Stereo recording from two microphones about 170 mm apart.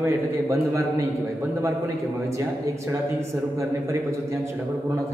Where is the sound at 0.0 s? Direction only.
15° right (ahead or behind).